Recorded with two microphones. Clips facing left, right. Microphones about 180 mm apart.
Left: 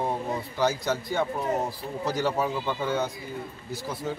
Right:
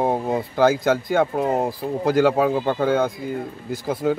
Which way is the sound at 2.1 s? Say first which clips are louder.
Right 9 dB; 90° right.